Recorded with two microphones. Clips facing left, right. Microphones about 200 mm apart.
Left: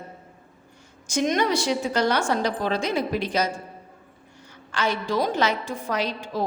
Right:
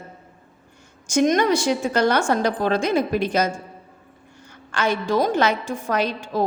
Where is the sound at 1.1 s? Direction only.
50° right (ahead or behind).